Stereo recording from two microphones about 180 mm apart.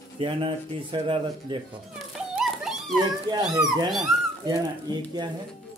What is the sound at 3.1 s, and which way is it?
Speech, 25° right (ahead or behind).